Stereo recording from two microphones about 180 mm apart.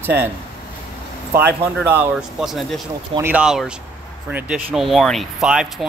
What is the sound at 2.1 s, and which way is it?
Speech, centre (ahead or behind).